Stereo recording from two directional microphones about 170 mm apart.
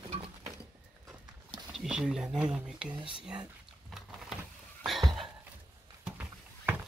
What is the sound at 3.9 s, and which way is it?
Power windows, 5° right (ahead or behind).